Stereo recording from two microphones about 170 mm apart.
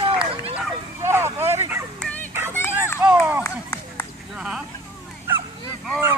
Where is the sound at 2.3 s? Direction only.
15° right (ahead or behind).